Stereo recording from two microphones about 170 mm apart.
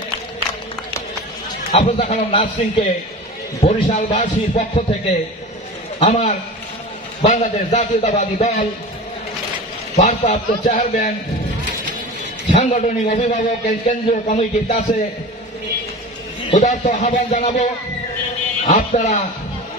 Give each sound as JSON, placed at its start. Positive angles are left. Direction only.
{"t": 1.7, "sound": "speech", "side_deg": 35}
{"t": 6.0, "sound": "a man's voice", "side_deg": 45}
{"t": 9.9, "sound": "a man's voice", "side_deg": 45}
{"t": 16.4, "sound": "speech", "side_deg": 40}
{"t": 18.7, "sound": "a man's voice", "side_deg": 45}